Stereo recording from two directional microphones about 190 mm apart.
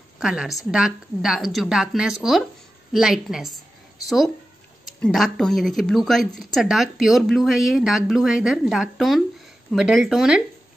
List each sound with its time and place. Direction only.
0.2 s a woman's voice: 5° right (ahead or behind)
5.0 s a woman's voice: centre (ahead or behind)